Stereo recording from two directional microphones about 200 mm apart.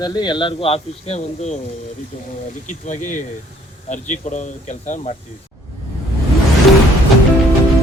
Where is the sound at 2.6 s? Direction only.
40° left (ahead or behind).